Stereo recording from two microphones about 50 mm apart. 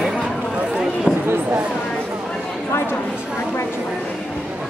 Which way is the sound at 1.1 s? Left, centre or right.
Right.